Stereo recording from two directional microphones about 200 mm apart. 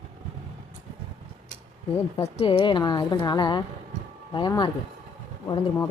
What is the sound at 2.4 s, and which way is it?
A woman's voice, 25° left (ahead or behind).